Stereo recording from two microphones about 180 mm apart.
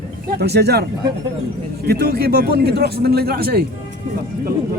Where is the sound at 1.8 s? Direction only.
60° right (ahead or behind).